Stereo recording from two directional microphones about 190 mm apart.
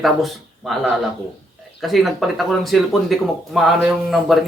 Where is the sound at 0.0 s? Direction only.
Centre (ahead or behind).